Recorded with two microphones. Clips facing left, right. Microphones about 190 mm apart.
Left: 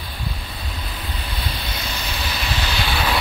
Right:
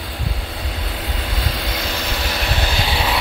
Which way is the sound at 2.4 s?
55° right (ahead or behind).